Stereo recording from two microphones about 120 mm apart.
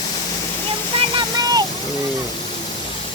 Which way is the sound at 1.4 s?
35° right (ahead or behind).